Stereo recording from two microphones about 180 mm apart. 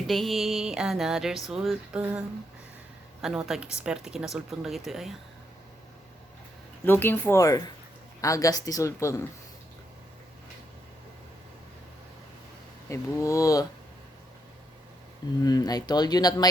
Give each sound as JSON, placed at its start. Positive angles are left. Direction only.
{"t": 0.1, "sound": "speech", "side_deg": 0}
{"t": 6.8, "sound": "a woman's voice", "side_deg": 10}
{"t": 12.9, "sound": "a woman's voice", "side_deg": 15}
{"t": 15.4, "sound": "speech", "side_deg": 20}